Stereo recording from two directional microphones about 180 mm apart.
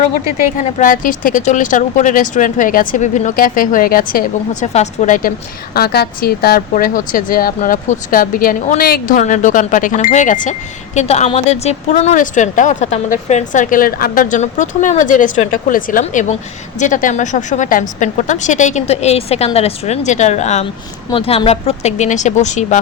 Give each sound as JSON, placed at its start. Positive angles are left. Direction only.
{"t": 0.5, "sound": "speech", "side_deg": 45}
{"t": 4.6, "sound": "a woman's voice", "side_deg": 40}
{"t": 5.7, "sound": "a woman's voice", "side_deg": 60}